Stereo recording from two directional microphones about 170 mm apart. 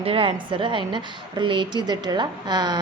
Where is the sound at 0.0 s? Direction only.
35° right (ahead or behind).